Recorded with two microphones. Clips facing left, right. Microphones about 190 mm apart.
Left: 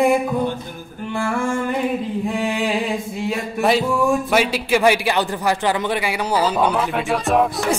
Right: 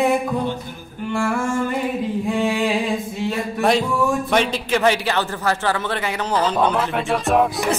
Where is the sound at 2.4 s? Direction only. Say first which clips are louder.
Right 3 dB; centre (ahead or behind).